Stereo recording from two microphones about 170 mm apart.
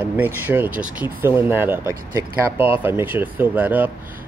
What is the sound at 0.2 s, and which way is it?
Speech, 10° right (ahead or behind).